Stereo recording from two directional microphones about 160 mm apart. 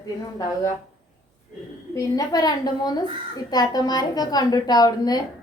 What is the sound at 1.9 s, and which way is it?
A woman's voice, 25° left (ahead or behind).